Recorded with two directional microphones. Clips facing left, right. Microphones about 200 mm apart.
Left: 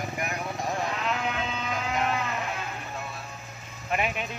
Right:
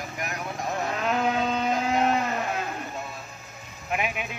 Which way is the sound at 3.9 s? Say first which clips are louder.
Even; 5° right (ahead or behind).